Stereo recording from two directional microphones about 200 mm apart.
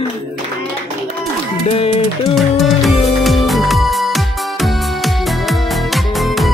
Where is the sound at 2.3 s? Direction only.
Centre (ahead or behind).